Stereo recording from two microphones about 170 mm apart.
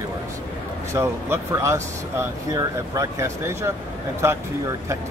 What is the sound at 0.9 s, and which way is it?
Speech, 15° right (ahead or behind).